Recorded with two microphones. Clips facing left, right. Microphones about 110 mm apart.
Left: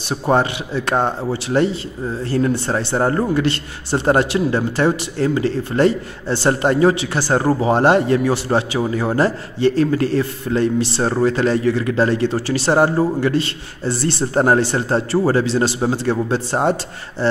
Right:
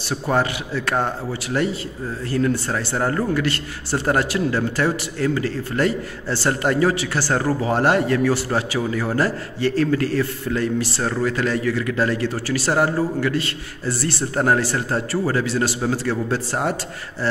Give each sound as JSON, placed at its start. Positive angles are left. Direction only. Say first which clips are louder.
{"t": 0.1, "sound": "a man's voice", "louder": "left 4 dB", "side_deg": 25}